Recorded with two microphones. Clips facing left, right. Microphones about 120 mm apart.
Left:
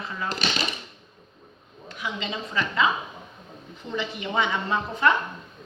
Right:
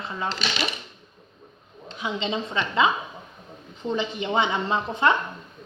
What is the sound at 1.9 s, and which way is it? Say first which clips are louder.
A woman's voice: right 4 dB; 25° right (ahead or behind).